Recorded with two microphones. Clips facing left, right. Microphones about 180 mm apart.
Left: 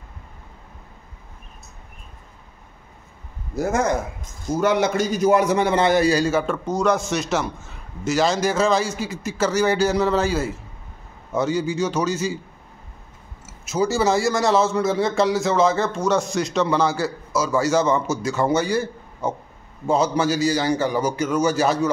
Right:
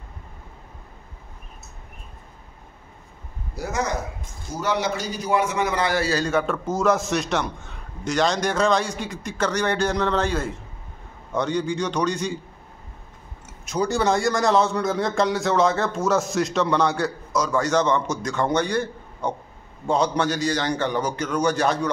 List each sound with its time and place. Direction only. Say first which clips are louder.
3.5 s a man's voice: left 6 dB; 50° left (ahead or behind); by 12.4 s 5° left (ahead or behind)
13.5 s a man's voice: left 2 dB; 5° left (ahead or behind)